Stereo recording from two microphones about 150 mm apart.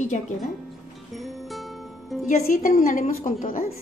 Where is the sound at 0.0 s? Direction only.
50° left (ahead or behind).